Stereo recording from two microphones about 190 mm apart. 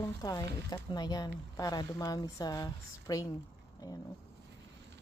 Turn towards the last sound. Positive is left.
turn(degrees=15)  # may be behind; listen again after turning